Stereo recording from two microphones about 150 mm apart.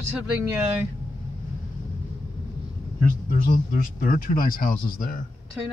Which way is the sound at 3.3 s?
65° left (ahead or behind).